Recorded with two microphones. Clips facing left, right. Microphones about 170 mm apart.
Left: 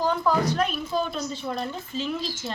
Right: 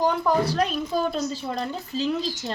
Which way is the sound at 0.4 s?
35° right (ahead or behind).